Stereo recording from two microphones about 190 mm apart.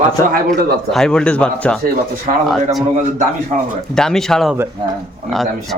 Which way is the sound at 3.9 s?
5° left (ahead or behind).